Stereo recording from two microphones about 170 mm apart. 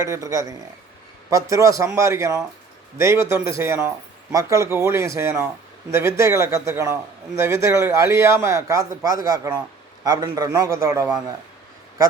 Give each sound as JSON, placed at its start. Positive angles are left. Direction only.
{"t": 0.0, "sound": "a man's voice", "side_deg": -15}